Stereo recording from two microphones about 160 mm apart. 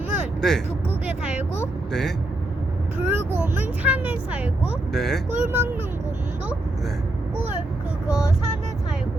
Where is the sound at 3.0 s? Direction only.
10° right (ahead or behind).